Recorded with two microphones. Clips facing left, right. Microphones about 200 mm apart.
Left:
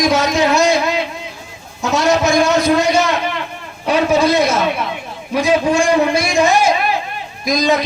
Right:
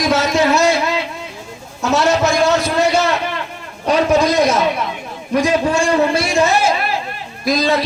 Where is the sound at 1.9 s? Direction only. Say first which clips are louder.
Left 1 dB; 15° left (ahead or behind).